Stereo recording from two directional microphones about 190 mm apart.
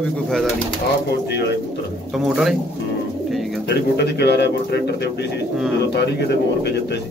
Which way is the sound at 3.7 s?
60° left (ahead or behind).